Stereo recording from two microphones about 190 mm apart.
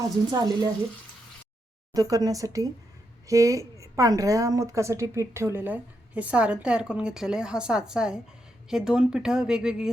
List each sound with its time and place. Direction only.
0.3 s speech: 20° right (ahead or behind)
1.9 s a woman's voice: 20° right (ahead or behind); by 9.9 s 5° right (ahead or behind)